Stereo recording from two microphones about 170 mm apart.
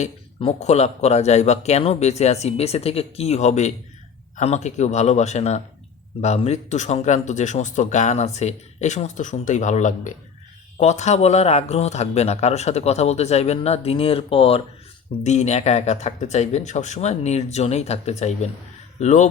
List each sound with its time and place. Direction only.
0.3 s speech: 35° left (ahead or behind)